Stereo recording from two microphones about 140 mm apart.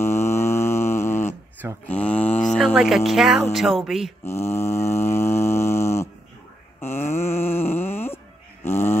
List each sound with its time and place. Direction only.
0.0 s mantra: 20° left (ahead or behind)
2.4 s a sound: centre (ahead or behind)
3.1 s speech: centre (ahead or behind)
4.2 s mantra: 20° left (ahead or behind)
6.8 s a sound: 15° left (ahead or behind)
8.6 s mantra: 15° left (ahead or behind)